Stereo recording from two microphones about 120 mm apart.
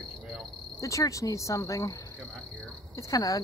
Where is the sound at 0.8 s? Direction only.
25° left (ahead or behind).